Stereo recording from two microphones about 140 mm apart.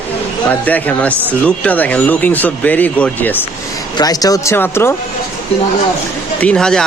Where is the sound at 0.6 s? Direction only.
10° left (ahead or behind).